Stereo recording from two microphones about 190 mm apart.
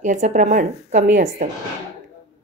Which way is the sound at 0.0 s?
40° right (ahead or behind).